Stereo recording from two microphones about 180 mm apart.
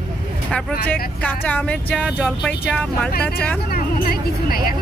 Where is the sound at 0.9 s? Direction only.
10° left (ahead or behind).